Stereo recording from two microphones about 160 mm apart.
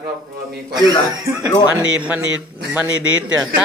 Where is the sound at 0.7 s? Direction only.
25° right (ahead or behind).